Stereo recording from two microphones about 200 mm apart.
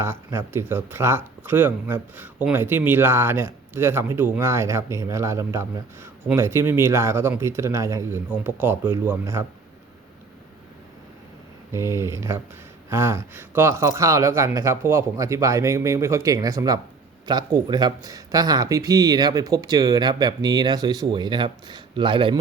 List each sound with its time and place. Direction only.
0.0 s speech: 15° right (ahead or behind)
11.7 s speech: 15° right (ahead or behind)